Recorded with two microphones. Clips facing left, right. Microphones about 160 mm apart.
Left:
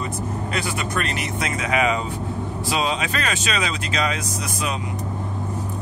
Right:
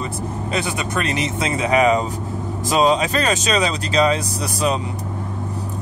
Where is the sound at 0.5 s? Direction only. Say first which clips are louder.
Right 5 dB; 20° right (ahead or behind).